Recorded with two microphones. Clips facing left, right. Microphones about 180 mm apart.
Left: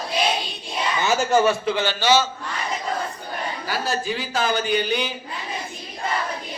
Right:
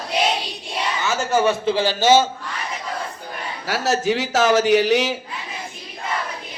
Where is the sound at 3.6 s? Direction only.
80° right.